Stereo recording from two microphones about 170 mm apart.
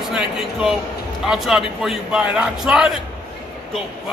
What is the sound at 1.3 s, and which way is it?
A man's voice, centre (ahead or behind).